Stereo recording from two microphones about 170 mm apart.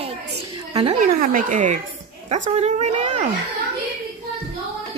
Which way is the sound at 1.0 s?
55° right (ahead or behind).